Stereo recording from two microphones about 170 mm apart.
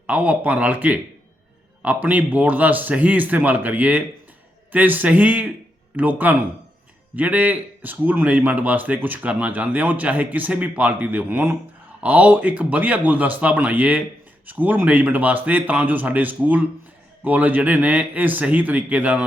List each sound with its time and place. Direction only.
0.1 s a man's voice: 10° right (ahead or behind)